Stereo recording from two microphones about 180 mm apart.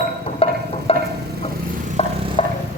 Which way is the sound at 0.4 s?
30° left (ahead or behind).